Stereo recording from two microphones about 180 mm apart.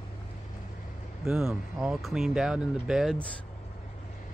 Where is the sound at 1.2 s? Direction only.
Centre (ahead or behind).